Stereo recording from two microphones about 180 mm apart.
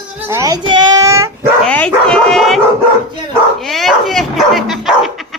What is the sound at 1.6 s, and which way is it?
Dog, 5° left (ahead or behind).